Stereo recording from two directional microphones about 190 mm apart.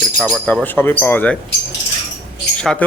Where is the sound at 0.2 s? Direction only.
Centre (ahead or behind).